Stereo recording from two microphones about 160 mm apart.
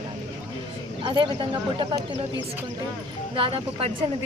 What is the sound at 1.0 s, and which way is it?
Speech, 30° right (ahead or behind).